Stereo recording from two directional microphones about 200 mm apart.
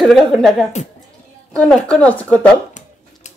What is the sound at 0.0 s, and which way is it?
A woman's voice, centre (ahead or behind).